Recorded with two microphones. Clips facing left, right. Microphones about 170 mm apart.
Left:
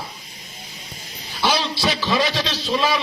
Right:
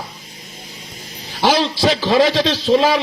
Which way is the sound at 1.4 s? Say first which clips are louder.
Right 6 dB; 55° right (ahead or behind).